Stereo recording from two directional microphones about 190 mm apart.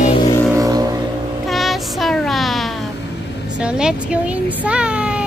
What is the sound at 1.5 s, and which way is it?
Child singing, centre (ahead or behind).